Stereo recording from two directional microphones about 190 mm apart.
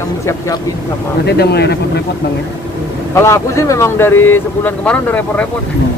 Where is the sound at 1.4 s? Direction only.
60° left (ahead or behind).